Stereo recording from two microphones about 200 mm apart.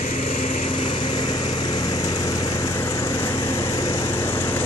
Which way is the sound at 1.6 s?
20° left (ahead or behind).